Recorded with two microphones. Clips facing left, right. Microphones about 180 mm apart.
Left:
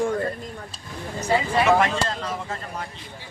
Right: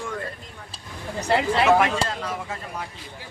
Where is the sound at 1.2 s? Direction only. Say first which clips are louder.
Right 1 dB; 70° right (ahead or behind).